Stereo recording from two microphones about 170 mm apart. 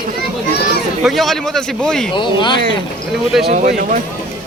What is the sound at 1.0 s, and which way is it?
Speech, centre (ahead or behind).